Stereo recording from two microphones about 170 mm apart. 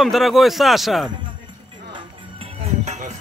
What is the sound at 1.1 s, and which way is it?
Music, 30° right (ahead or behind).